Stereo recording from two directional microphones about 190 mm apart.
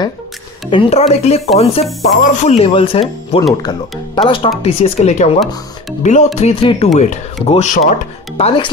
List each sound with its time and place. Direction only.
0.7 s speech: 30° left (ahead or behind)